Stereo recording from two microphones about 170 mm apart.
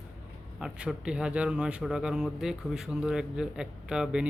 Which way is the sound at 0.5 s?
5° right (ahead or behind).